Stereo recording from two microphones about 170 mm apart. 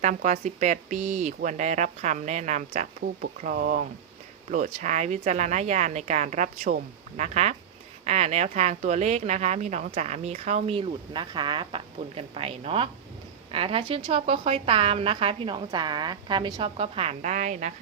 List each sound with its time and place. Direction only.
0.0 s speech: 45° right (ahead or behind)
4.5 s speech: 45° right (ahead or behind)